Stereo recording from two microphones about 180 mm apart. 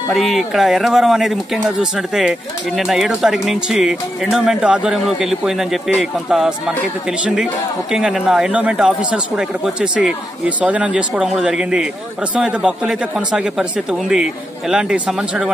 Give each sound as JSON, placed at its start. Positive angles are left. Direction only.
{"t": 0.1, "sound": "speech", "side_deg": 0}